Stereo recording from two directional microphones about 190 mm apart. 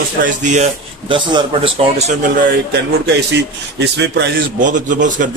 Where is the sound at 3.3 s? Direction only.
65° right (ahead or behind).